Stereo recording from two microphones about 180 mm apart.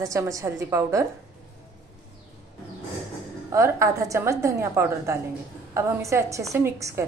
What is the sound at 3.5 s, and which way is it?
A woman's voice, 15° right (ahead or behind).